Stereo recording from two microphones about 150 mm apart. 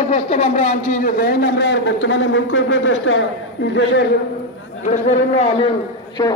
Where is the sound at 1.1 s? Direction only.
90° left.